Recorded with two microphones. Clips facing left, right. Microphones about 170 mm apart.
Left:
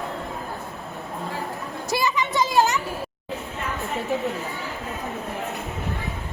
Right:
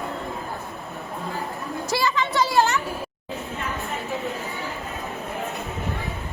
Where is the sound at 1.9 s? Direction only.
15° left (ahead or behind).